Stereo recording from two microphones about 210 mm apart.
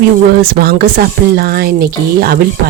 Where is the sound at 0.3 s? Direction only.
45° right (ahead or behind).